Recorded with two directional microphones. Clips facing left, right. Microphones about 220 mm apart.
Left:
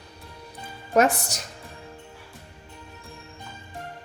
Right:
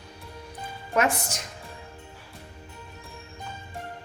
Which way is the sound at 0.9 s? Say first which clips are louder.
Left 4 dB; 40° left (ahead or behind).